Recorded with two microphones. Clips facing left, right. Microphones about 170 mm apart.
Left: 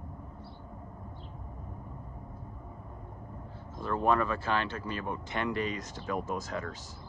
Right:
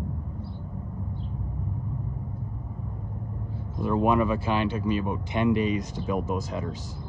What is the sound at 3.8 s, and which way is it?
Speech, 15° right (ahead or behind).